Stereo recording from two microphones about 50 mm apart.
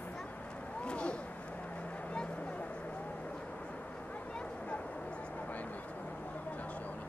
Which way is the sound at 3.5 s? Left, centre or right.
Left.